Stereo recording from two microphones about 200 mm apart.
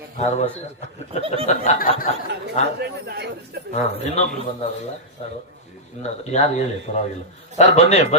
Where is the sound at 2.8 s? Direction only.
55° right (ahead or behind).